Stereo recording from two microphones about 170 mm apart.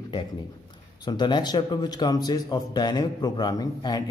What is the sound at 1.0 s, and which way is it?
A man's voice, 25° left (ahead or behind).